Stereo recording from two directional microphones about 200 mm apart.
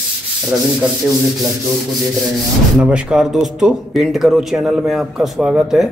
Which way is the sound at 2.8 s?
5° right (ahead or behind).